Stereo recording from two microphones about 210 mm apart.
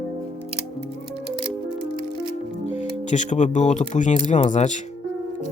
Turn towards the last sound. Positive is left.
turn(degrees=35)  # may be behind; listen again after turning